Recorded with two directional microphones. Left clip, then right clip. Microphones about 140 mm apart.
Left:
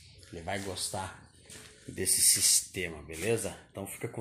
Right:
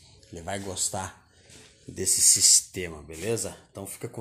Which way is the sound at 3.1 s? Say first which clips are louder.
Right 1 dB; 20° right (ahead or behind).